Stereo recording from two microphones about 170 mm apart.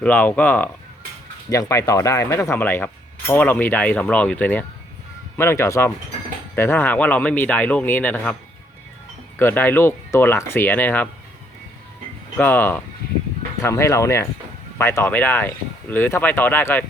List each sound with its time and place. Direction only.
0.0 s speech: 10° left (ahead or behind)
9.4 s speech: 10° left (ahead or behind)
12.4 s speech: 10° left (ahead or behind)